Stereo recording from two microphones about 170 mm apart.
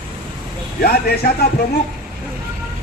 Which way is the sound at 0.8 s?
65° left (ahead or behind).